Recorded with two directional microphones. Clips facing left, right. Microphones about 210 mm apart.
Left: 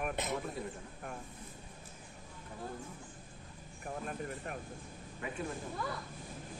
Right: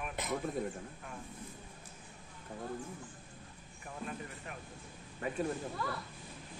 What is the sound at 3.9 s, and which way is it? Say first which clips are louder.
Speech: left 3 dB; 45° left (ahead or behind).